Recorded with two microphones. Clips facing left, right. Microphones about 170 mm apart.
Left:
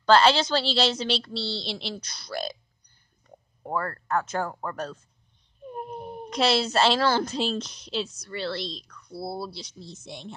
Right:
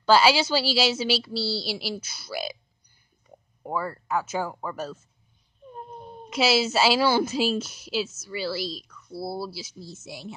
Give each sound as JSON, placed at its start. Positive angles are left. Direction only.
{"t": 0.0, "sound": "a woman's voice", "side_deg": -5}
{"t": 5.7, "sound": "a sound", "side_deg": 15}
{"t": 6.3, "sound": "a woman's voice", "side_deg": -5}